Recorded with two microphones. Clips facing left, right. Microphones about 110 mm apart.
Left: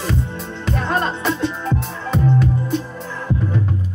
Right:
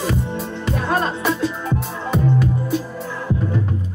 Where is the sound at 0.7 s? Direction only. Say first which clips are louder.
Even; 5° right (ahead or behind).